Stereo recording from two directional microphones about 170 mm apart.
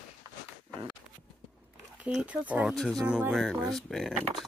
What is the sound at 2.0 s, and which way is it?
Speech, 5° right (ahead or behind).